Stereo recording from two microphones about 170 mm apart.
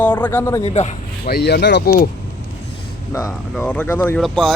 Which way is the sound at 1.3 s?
70° left (ahead or behind).